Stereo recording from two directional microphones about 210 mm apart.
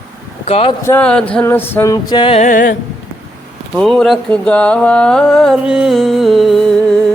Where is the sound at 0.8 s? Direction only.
10° left (ahead or behind); by 2.5 s 25° left (ahead or behind).